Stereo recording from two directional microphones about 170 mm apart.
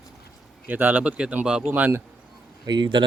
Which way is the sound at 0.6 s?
10° right (ahead or behind).